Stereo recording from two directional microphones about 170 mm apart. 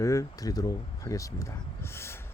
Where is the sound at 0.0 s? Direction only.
20° left (ahead or behind).